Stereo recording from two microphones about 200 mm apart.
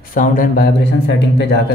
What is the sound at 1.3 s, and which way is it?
Speech, 60° left (ahead or behind).